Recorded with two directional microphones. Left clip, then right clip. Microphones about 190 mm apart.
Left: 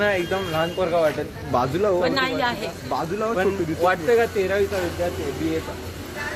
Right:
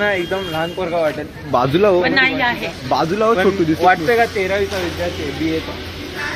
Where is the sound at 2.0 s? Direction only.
20° left (ahead or behind).